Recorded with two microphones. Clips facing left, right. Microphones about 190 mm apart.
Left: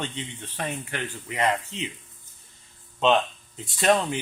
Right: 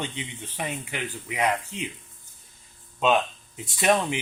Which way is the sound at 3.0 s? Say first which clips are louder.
Left 1 dB; 10° right (ahead or behind).